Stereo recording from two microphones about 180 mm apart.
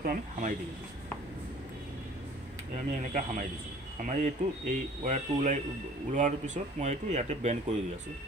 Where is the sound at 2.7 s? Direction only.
45° right (ahead or behind).